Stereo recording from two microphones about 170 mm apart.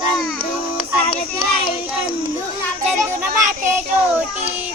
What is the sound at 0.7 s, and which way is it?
Music, 35° left (ahead or behind).